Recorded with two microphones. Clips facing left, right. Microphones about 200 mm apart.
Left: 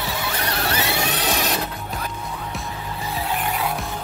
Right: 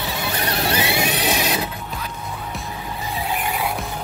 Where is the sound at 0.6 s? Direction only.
15° right (ahead or behind).